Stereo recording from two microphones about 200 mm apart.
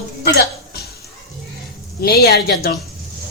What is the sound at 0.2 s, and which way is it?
Cough, 50° left (ahead or behind).